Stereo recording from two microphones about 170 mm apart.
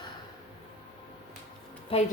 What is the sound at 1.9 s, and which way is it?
Speech, 35° left (ahead or behind).